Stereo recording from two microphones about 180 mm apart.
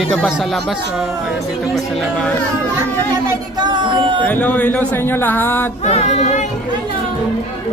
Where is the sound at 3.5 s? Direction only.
25° right (ahead or behind).